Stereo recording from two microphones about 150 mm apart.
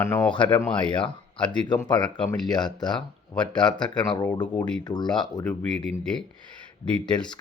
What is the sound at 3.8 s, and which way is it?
Speech, 30° left (ahead or behind).